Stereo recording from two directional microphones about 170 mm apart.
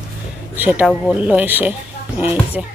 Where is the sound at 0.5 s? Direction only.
10° right (ahead or behind).